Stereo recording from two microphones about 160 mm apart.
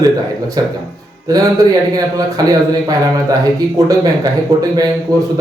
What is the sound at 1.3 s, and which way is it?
Speech, 25° right (ahead or behind).